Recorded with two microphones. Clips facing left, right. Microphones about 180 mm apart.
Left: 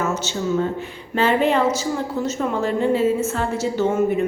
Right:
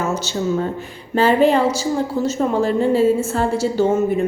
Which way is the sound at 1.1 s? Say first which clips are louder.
Right 4 dB; 35° right (ahead or behind).